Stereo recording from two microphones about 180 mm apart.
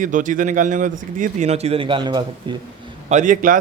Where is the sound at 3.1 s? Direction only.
45° right (ahead or behind).